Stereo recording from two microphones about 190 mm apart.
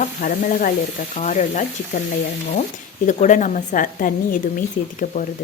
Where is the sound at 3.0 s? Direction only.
40° left (ahead or behind).